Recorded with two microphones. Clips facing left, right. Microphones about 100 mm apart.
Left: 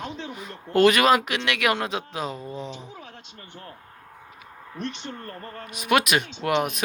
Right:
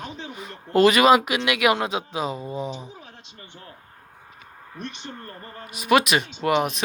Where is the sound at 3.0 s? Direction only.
60° left (ahead or behind).